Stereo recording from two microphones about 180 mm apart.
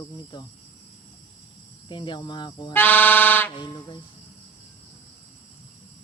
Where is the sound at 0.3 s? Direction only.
25° left (ahead or behind).